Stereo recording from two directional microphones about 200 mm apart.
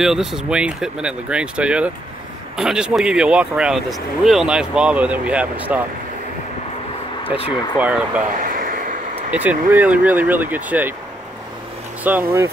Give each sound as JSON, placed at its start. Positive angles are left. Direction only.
{"t": 0.0, "sound": "speech", "side_deg": 0}
{"t": 7.7, "sound": "speech", "side_deg": -5}
{"t": 8.5, "sound": "vehicle", "side_deg": -45}
{"t": 9.3, "sound": "speech", "side_deg": -10}
{"t": 12.0, "sound": "speech", "side_deg": -10}